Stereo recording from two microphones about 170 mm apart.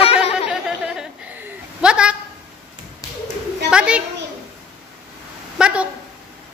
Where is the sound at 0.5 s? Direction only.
5° right (ahead or behind).